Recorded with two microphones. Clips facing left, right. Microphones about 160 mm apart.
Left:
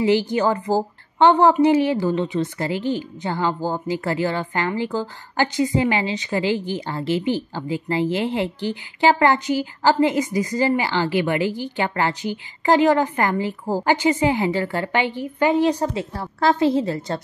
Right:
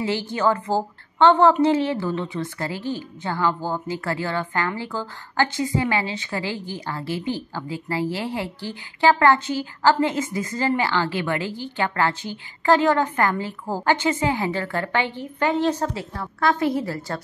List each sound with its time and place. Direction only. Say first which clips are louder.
0.0 s a woman's voice: left 4 dB; 15° left (ahead or behind)